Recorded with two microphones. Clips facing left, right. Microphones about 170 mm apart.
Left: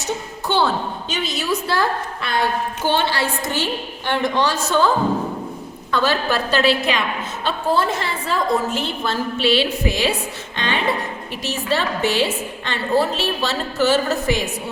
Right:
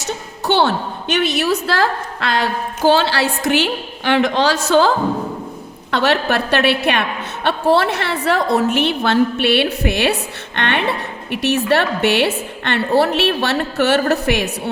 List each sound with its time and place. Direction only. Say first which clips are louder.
0.4 s a woman's voice: right 3 dB; 75° right (ahead or behind)
5.9 s a woman's voice: right 3 dB; 70° right (ahead or behind)